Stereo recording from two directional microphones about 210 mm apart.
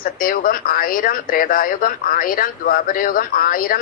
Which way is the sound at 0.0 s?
40° left (ahead or behind).